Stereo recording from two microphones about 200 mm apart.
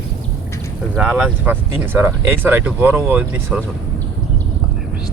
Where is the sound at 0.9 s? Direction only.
5° right (ahead or behind).